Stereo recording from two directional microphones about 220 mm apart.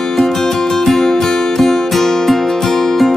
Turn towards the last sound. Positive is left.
turn(degrees=0)  # may be behind; listen again after turning